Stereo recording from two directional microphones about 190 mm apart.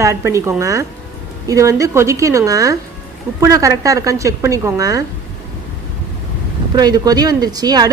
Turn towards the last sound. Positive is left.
turn(degrees=-20)  # may be behind; listen again after turning